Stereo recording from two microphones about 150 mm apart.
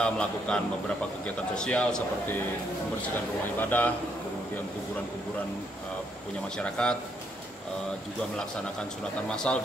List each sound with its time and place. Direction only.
0.0 s a man's voice: 5° left (ahead or behind)
3.5 s a man's voice: 10° left (ahead or behind)
6.5 s a man's voice: 5° left (ahead or behind)
9.3 s speech: 5° left (ahead or behind)